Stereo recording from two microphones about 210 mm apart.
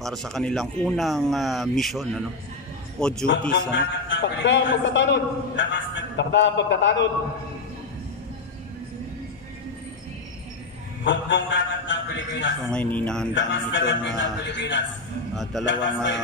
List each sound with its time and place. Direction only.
0.0 s speech: centre (ahead or behind)
3.7 s a man's voice: 60° left (ahead or behind)
11.1 s a man's voice: 60° left (ahead or behind)
12.7 s speech: 5° left (ahead or behind)
13.3 s a man's voice: 60° left (ahead or behind)